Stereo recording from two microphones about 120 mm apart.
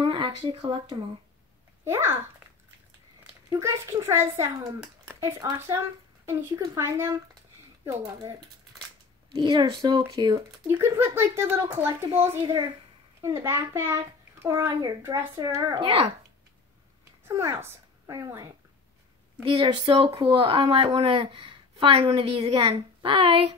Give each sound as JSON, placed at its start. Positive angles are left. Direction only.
{"t": 0.0, "sound": "speech", "side_deg": -45}
{"t": 1.9, "sound": "a child's voice", "side_deg": -20}
{"t": 3.4, "sound": "a child's voice", "side_deg": -25}
{"t": 9.4, "sound": "speech", "side_deg": -40}
{"t": 10.7, "sound": "a child's voice", "side_deg": -20}
{"t": 15.8, "sound": "speech", "side_deg": -50}
{"t": 17.2, "sound": "a woman's voice", "side_deg": -25}
{"t": 19.4, "sound": "speech", "side_deg": -45}